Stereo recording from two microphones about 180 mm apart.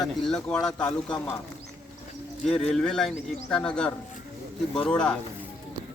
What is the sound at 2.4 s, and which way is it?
Speech, 5° left (ahead or behind).